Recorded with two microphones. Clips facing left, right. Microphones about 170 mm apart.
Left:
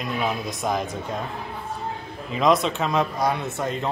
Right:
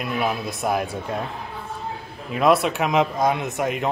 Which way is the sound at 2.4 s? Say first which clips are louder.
Right 2 dB; 5° right (ahead or behind).